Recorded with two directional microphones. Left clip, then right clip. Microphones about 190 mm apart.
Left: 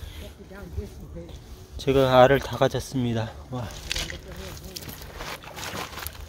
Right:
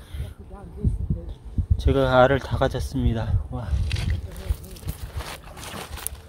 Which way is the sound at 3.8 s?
45° left (ahead or behind).